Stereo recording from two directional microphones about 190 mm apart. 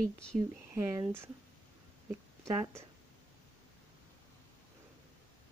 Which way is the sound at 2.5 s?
15° right (ahead or behind).